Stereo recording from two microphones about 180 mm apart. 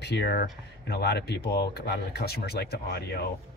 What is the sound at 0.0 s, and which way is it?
Speech, 65° left (ahead or behind).